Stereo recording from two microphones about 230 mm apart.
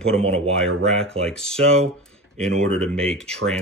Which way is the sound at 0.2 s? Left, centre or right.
Right.